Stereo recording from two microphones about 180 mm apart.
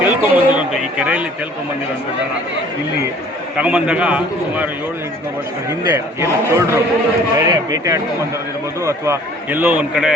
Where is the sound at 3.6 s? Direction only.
5° right (ahead or behind).